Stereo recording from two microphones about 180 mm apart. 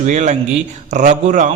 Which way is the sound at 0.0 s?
40° right (ahead or behind).